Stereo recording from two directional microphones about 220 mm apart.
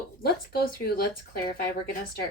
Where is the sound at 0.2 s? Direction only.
45° left (ahead or behind).